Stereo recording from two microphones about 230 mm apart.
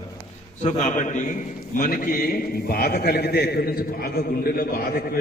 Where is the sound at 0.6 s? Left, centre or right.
Left.